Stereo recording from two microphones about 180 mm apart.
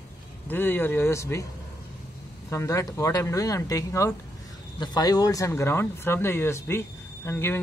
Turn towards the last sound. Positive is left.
turn(degrees=10)  # may be behind; listen again after turning